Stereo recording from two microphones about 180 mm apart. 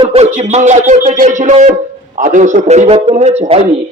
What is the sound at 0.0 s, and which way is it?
A man's voice, 35° right (ahead or behind).